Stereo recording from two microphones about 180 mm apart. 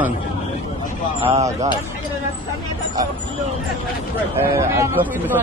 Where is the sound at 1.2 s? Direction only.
30° right (ahead or behind).